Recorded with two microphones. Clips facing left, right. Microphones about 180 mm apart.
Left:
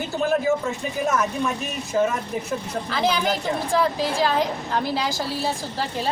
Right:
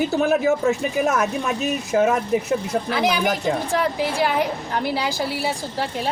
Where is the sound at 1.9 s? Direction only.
85° right.